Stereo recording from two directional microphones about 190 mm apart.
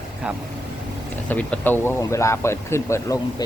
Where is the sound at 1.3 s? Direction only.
10° left (ahead or behind).